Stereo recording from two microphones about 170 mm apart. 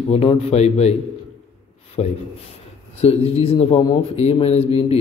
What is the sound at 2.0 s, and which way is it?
Speech, 40° left (ahead or behind).